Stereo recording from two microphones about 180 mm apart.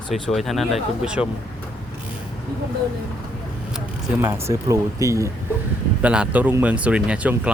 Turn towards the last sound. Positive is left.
turn(degrees=-5)  # may be behind; listen again after turning